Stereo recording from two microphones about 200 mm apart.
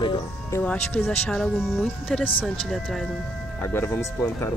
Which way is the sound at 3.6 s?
10° left (ahead or behind).